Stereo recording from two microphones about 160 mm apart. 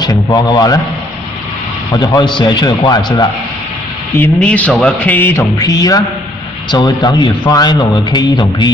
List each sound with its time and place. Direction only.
0.0 s a man's voice: 25° left (ahead or behind)
1.9 s speech: 25° left (ahead or behind)
4.2 s speech: 10° left (ahead or behind); by 8.7 s 25° left (ahead or behind)